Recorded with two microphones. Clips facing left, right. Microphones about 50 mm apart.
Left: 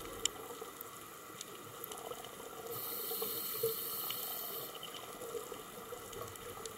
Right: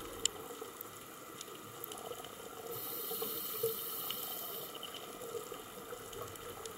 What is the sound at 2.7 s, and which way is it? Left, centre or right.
Water, right.